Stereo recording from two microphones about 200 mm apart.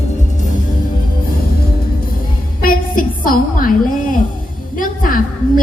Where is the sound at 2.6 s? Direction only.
45° left (ahead or behind).